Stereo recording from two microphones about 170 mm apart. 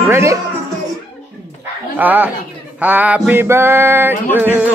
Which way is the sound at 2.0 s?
10° right (ahead or behind).